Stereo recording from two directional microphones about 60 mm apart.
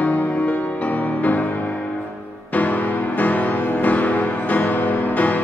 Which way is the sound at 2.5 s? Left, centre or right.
Left.